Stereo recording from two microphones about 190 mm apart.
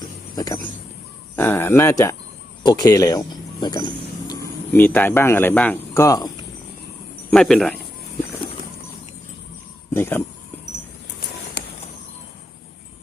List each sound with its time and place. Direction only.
0.0 s a sound: 20° left (ahead or behind)
1.4 s speech: 10° left (ahead or behind)
4.3 s speech: 10° left (ahead or behind)
7.3 s speech: 5° left (ahead or behind)
9.9 s speech: 10° left (ahead or behind)